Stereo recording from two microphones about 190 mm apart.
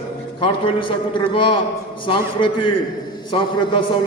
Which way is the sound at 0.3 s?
25° left (ahead or behind).